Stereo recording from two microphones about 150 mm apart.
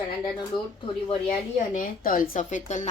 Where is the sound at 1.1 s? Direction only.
50° left (ahead or behind).